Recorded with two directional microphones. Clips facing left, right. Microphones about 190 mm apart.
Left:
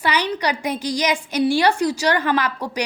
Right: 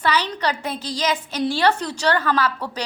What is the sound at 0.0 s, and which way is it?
A woman's voice, 10° left (ahead or behind).